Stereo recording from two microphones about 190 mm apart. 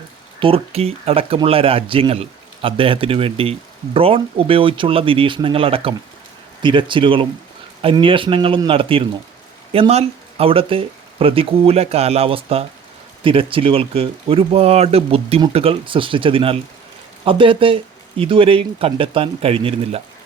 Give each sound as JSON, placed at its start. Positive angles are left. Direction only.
{"t": 0.3, "sound": "speech", "side_deg": -30}